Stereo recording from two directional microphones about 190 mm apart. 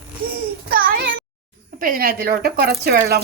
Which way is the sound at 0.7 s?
50° right (ahead or behind).